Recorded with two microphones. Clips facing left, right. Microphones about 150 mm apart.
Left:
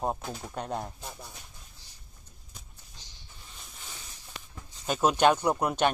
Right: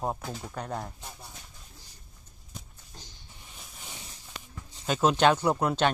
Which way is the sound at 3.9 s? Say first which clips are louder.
Right 3 dB; 25° right (ahead or behind).